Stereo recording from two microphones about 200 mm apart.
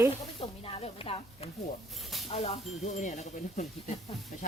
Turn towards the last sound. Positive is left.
turn(degrees=35)  # may be behind; listen again after turning